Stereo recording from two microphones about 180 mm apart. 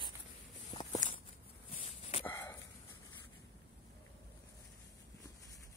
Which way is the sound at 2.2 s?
15° left (ahead or behind).